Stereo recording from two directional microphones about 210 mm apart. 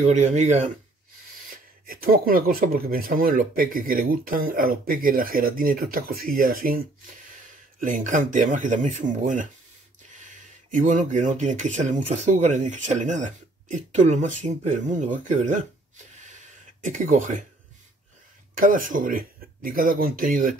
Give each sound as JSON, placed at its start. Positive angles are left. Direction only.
{"t": 0.0, "sound": "speech", "side_deg": -35}
{"t": 1.9, "sound": "speech", "side_deg": -45}
{"t": 7.8, "sound": "speech", "side_deg": -40}
{"t": 10.7, "sound": "speech", "side_deg": -35}
{"t": 16.8, "sound": "speech", "side_deg": -35}
{"t": 18.6, "sound": "speech", "side_deg": -40}